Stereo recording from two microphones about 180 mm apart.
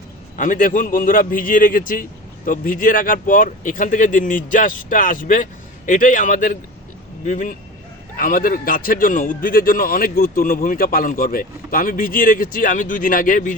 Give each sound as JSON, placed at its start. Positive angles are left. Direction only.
{"t": 0.3, "sound": "a man's voice", "side_deg": 45}